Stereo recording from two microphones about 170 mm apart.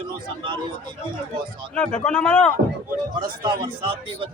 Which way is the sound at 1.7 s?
5° left (ahead or behind).